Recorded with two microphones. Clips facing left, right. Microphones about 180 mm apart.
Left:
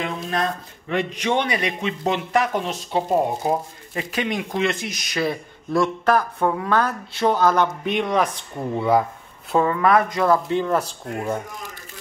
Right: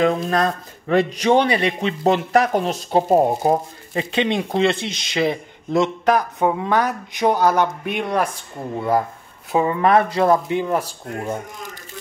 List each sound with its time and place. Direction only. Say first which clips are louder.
0.0 s speech: right 7 dB; 40° right (ahead or behind)
4.0 s speech: right 4 dB; 25° right (ahead or behind); by 9.0 s centre (ahead or behind)
9.5 s speech: even; 15° right (ahead or behind)
9.8 s speech: right 2 dB; 30° right (ahead or behind)
10.5 s speech: even; 15° right (ahead or behind)